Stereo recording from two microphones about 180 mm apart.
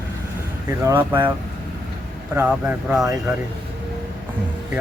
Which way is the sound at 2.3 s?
10° right (ahead or behind).